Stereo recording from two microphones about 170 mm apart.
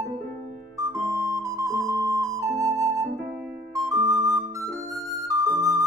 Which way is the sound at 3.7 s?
20° right (ahead or behind).